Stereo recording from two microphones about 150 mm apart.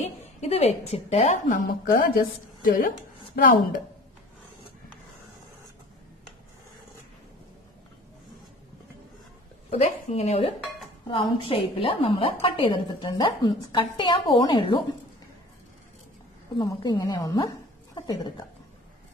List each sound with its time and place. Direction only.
0.0 s a woman's voice: 45° left (ahead or behind)
1.5 s a woman's voice: 65° left (ahead or behind)
9.7 s a woman's voice: 45° left (ahead or behind)
16.5 s a woman's voice: 25° left (ahead or behind)